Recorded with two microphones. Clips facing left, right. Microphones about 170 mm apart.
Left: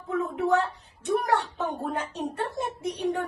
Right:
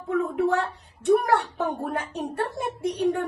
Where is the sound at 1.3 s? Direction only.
65° right (ahead or behind).